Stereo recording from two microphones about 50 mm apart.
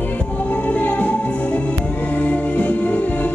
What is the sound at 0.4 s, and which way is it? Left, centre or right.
Music, left.